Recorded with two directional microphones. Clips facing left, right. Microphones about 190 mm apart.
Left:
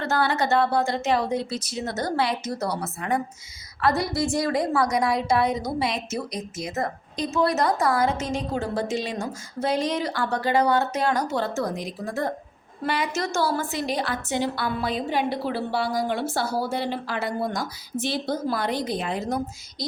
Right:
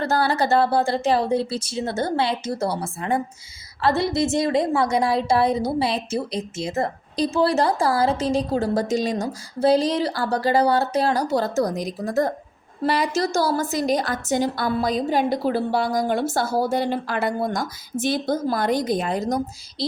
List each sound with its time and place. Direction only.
0.0 s a woman's voice: 35° right (ahead or behind)